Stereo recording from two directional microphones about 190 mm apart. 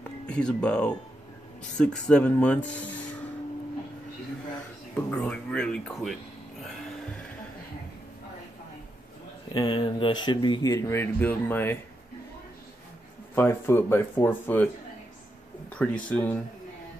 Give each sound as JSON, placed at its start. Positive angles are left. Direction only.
{"t": 0.3, "sound": "speech", "side_deg": 5}
{"t": 4.9, "sound": "speech", "side_deg": 10}
{"t": 9.5, "sound": "speech", "side_deg": 25}
{"t": 13.3, "sound": "speech", "side_deg": 10}
{"t": 15.7, "sound": "speech", "side_deg": 5}